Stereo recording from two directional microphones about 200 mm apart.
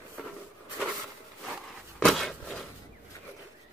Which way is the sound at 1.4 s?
Centre (ahead or behind).